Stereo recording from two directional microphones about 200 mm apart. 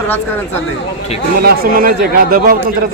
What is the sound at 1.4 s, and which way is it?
Speech, 45° right (ahead or behind).